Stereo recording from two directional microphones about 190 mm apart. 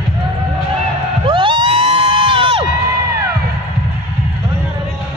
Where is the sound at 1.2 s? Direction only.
25° right (ahead or behind).